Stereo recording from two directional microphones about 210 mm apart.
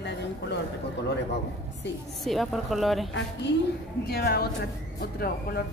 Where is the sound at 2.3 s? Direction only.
Centre (ahead or behind).